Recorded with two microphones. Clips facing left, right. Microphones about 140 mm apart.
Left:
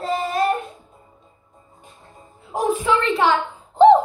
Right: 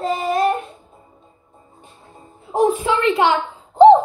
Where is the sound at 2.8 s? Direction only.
20° right (ahead or behind).